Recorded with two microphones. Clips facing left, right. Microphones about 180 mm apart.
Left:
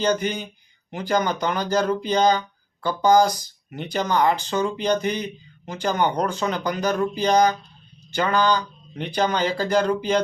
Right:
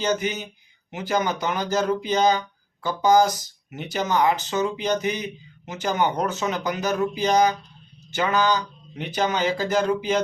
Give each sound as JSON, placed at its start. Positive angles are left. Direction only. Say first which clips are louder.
{"t": 0.0, "sound": "speech", "louder": "left 2 dB", "side_deg": -5}